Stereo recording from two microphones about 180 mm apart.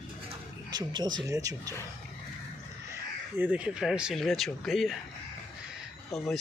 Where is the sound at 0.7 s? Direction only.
25° right (ahead or behind).